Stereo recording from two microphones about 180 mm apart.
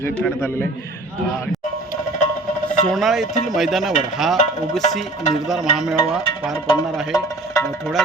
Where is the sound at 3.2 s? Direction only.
45° left (ahead or behind).